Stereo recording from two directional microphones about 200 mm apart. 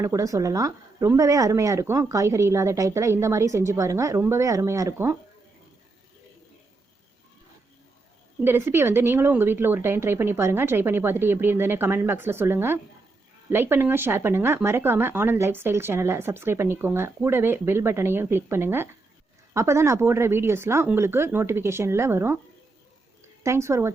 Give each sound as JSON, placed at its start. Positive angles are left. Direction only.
{"t": 0.0, "sound": "speech", "side_deg": -15}
{"t": 8.4, "sound": "speech", "side_deg": -10}
{"t": 23.4, "sound": "speech", "side_deg": -15}